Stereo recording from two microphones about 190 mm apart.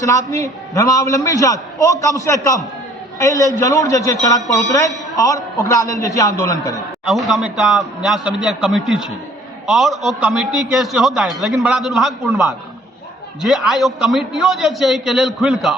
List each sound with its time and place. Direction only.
0.0 s a man's voice: 15° left (ahead or behind)
7.0 s a man's voice: centre (ahead or behind)